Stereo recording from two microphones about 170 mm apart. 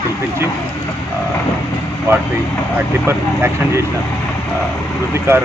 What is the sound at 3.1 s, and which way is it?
Speech, 15° right (ahead or behind).